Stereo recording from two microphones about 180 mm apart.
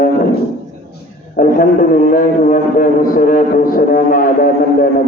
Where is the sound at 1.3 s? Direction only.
50° left (ahead or behind).